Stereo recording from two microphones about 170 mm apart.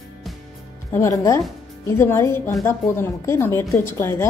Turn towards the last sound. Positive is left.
turn(degrees=15)  # may be behind; listen again after turning